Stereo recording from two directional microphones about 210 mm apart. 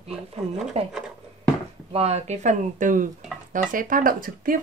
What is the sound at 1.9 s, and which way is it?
Speech, 30° right (ahead or behind).